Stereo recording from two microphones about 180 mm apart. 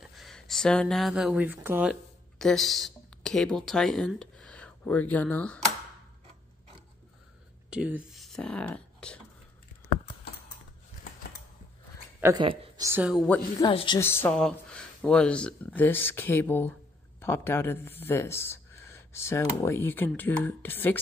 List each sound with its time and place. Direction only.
0.0 s speech: centre (ahead or behind)
7.7 s speech: 5° right (ahead or behind)
12.4 s a woman's voice: 25° right (ahead or behind)
13.6 s speech: 25° left (ahead or behind)
13.9 s speech: 15° left (ahead or behind)